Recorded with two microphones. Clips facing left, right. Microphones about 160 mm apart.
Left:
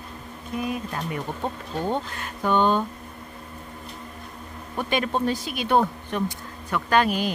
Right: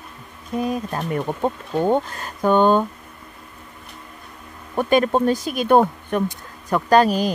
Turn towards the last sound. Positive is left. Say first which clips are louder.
# right 6 dB
turn(degrees=-40)  # may be behind; listen again after turning